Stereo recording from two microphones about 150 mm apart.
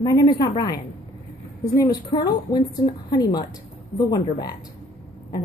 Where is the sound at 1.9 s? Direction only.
25° left (ahead or behind).